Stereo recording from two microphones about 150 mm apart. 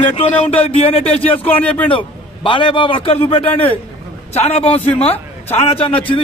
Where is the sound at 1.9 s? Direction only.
35° left (ahead or behind).